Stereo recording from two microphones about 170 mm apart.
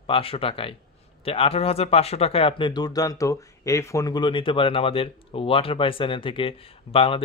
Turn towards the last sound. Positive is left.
turn(degrees=30)  # may be behind; listen again after turning